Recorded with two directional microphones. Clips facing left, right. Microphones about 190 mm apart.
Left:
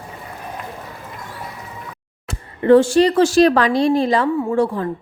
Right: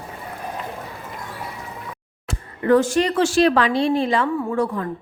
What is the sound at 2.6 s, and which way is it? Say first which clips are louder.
A woman's voice: left 5 dB; 30° left (ahead or behind).